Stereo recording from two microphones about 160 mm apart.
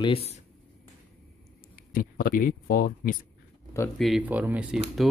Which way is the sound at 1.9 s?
65° left (ahead or behind).